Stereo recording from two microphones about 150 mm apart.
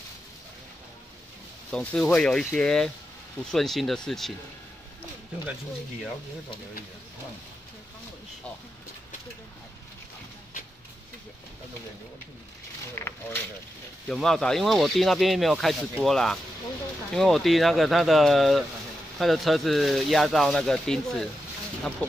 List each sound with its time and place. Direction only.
1.7 s speech: 5° left (ahead or behind)
12.9 s speech: 15° left (ahead or behind)
14.0 s speech: 5° left (ahead or behind)